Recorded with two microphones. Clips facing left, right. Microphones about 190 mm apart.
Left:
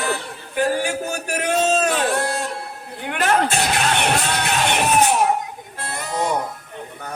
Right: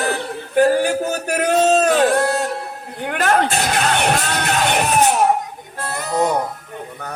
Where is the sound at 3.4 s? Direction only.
45° right (ahead or behind).